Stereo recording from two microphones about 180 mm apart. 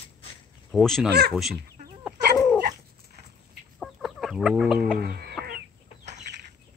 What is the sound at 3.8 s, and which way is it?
Chicken, centre (ahead or behind).